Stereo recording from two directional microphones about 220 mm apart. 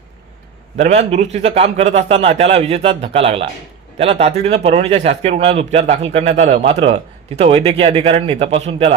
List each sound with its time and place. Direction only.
0.8 s a man's voice: 30° right (ahead or behind)